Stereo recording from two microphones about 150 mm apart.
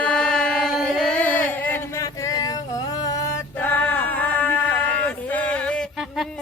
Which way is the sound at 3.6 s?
10° left (ahead or behind).